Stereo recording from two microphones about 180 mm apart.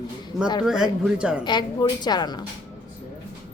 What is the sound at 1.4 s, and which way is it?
Speech, 25° left (ahead or behind).